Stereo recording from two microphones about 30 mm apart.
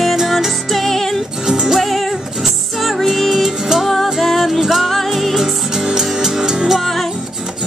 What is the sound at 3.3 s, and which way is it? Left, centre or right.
Music, centre.